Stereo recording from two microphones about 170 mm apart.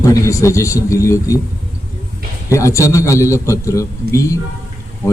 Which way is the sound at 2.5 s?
20° left (ahead or behind).